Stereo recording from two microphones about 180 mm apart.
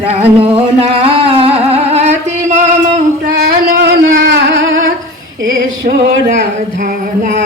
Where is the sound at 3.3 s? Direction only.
50° right (ahead or behind).